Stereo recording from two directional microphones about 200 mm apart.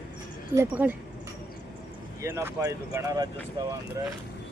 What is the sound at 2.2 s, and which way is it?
Speech, 15° right (ahead or behind).